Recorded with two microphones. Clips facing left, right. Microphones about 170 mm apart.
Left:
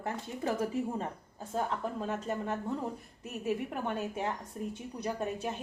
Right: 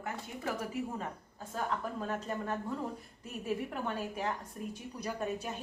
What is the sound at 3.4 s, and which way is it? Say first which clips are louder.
A woman's voice: left 2 dB; 20° left (ahead or behind).